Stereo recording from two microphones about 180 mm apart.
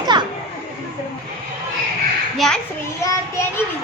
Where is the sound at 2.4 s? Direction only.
Centre (ahead or behind).